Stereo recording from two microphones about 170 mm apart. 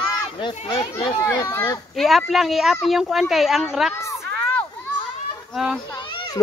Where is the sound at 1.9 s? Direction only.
Centre (ahead or behind).